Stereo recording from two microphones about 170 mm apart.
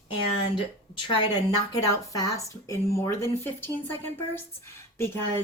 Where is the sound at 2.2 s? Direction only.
20° left (ahead or behind).